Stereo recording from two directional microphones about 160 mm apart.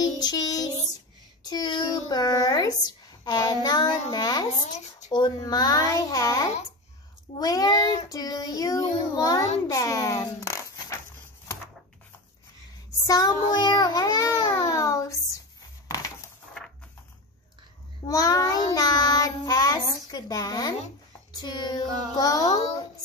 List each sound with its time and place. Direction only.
0.0 s child singing: 25° left (ahead or behind)
1.4 s a child's voice: 25° left (ahead or behind)
3.6 s child singing: 25° left (ahead or behind)
9.7 s a sound: 20° left (ahead or behind)
13.0 s babbling: 20° left (ahead or behind)
18.0 s child singing: 20° left (ahead or behind)